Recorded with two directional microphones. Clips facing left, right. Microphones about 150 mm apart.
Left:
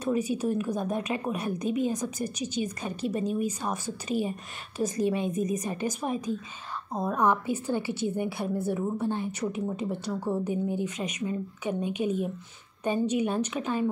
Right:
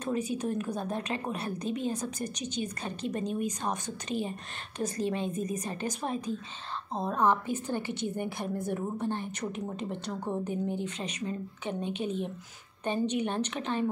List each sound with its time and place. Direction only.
0.0 s a woman's voice: 10° left (ahead or behind)